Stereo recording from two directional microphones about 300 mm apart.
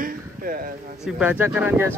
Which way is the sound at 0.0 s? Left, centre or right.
Right.